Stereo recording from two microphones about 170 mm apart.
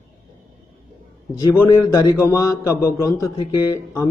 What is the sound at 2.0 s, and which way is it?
A man's voice, 20° left (ahead or behind).